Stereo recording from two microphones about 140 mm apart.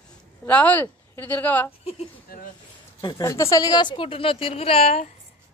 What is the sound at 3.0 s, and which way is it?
A woman's voice, 25° left (ahead or behind).